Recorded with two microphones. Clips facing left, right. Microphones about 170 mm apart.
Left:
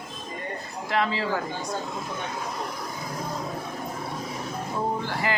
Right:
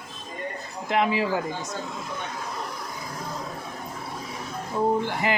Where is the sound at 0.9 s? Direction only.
20° right (ahead or behind).